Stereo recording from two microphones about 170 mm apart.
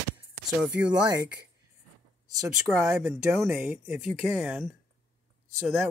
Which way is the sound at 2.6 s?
20° right (ahead or behind).